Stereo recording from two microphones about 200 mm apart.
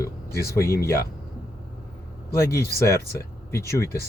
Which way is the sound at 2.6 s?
50° left (ahead or behind).